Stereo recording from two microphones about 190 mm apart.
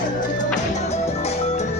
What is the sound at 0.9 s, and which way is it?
Music, 35° left (ahead or behind).